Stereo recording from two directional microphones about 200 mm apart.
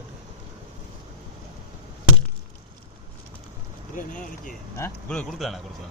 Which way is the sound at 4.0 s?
40° left (ahead or behind).